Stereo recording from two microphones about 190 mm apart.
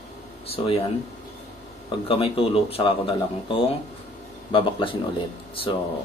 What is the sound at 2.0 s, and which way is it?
Speech, 30° left (ahead or behind).